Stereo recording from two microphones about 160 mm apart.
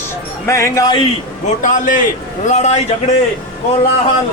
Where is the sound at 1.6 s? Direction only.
55° left (ahead or behind).